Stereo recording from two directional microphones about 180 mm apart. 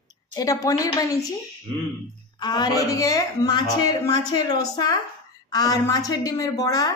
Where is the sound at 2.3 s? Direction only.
25° left (ahead or behind).